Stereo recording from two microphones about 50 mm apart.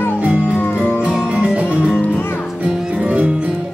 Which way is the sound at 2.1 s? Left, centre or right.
Left.